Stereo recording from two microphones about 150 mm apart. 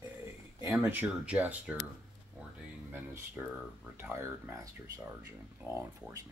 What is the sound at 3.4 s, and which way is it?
Speech, 10° right (ahead or behind).